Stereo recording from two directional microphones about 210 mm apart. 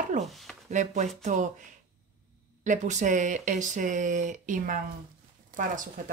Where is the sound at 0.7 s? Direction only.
35° right (ahead or behind).